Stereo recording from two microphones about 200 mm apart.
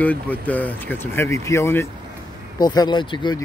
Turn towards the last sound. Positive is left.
turn(degrees=25)  # may be behind; listen again after turning